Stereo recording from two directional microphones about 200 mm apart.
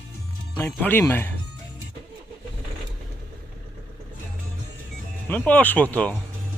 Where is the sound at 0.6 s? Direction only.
10° left (ahead or behind).